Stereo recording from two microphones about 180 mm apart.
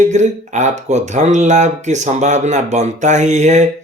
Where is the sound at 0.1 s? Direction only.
40° right (ahead or behind).